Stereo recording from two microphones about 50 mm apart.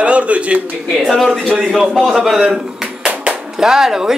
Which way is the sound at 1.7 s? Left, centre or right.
Centre.